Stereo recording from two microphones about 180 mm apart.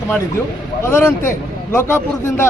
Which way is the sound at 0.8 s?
15° left (ahead or behind).